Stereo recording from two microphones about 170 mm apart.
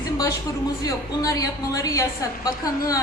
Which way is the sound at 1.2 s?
20° left (ahead or behind).